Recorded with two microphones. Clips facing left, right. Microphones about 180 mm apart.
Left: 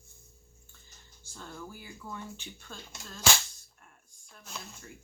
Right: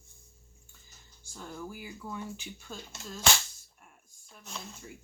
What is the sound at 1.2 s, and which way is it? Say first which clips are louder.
Speech: right 3 dB; 10° right (ahead or behind).